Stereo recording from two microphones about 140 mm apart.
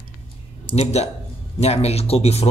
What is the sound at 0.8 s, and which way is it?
A man's voice, 50° left (ahead or behind).